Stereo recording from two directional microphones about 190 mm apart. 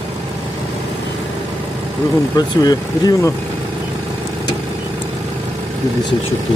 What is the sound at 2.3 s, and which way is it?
Speech, 20° left (ahead or behind).